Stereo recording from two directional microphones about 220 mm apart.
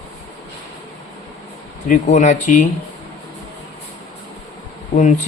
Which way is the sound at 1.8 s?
35° left (ahead or behind).